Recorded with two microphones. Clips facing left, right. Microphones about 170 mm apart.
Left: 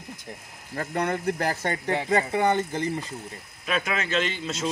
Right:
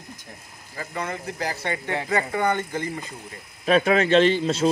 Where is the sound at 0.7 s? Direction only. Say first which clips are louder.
Left 4 dB; 60° left (ahead or behind).